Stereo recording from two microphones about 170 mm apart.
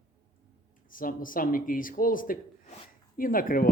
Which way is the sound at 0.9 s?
55° left (ahead or behind).